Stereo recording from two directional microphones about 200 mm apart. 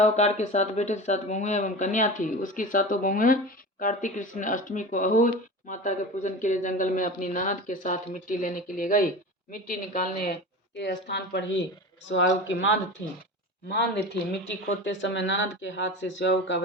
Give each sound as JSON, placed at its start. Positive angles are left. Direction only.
{"t": 0.0, "sound": "a woman's voice", "side_deg": 35}
{"t": 10.8, "sound": "speech", "side_deg": 60}